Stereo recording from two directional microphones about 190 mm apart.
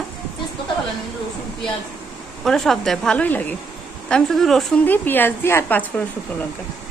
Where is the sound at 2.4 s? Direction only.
Centre (ahead or behind).